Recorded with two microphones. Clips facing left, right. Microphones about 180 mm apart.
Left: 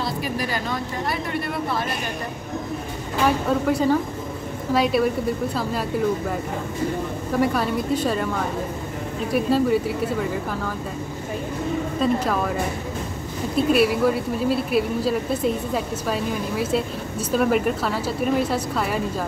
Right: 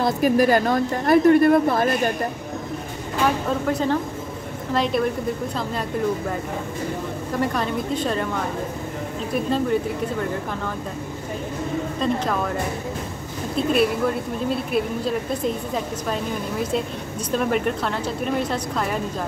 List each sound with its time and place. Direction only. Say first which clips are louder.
0.0 s speech: right 9 dB; 50° right (ahead or behind)
3.4 s a woman's voice: left 2 dB; 10° left (ahead or behind)
7.3 s a woman's voice: left 3 dB; 5° left (ahead or behind)
9.3 s a woman's voice: left 3 dB; 5° left (ahead or behind)
12.0 s speech: left 2 dB; 5° left (ahead or behind)
13.7 s speech: left 2 dB; 5° left (ahead or behind)